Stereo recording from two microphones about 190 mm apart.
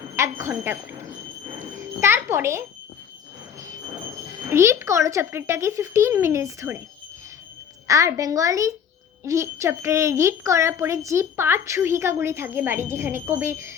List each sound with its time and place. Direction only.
0.2 s a child's voice: 15° right (ahead or behind)
4.4 s a child's voice: 15° right (ahead or behind)
7.9 s a child's voice: 15° right (ahead or behind)